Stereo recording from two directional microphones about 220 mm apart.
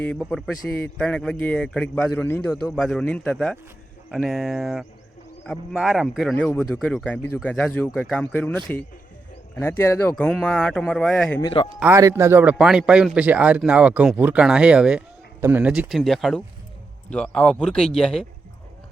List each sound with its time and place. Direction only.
0.0 s a man's voice: 5° left (ahead or behind)
11.3 s speech: 20° left (ahead or behind)
11.8 s a man's voice: 10° right (ahead or behind)